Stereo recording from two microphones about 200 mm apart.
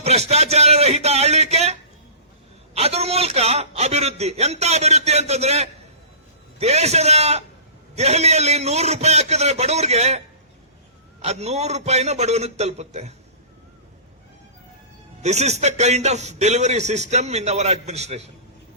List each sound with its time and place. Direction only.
0.0 s a sound: 30° right (ahead or behind)
2.7 s a man's voice: 30° right (ahead or behind)
15.2 s a man's voice: 35° right (ahead or behind)